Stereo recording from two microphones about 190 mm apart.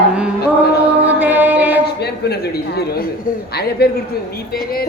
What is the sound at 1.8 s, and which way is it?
A man's voice, 60° left (ahead or behind).